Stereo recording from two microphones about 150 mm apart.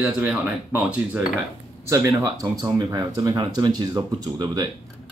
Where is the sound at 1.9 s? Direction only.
20° right (ahead or behind).